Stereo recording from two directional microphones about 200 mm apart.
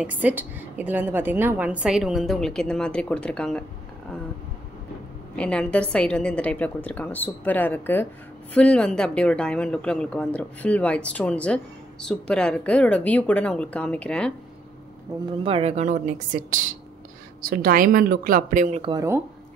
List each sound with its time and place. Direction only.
0.0 s speech: 10° right (ahead or behind)
5.3 s a woman's voice: 5° left (ahead or behind)
15.4 s speech: 30° right (ahead or behind)
18.8 s speech: 25° right (ahead or behind)